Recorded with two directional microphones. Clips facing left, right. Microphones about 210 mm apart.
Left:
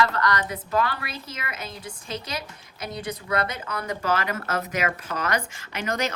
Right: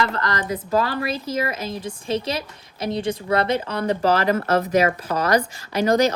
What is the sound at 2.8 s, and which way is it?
Speech, 30° right (ahead or behind).